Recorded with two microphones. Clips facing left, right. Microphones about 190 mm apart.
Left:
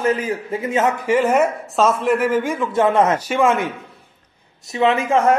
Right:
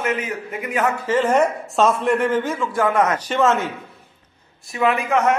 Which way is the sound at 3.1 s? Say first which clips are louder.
Left 1 dB; 10° left (ahead or behind).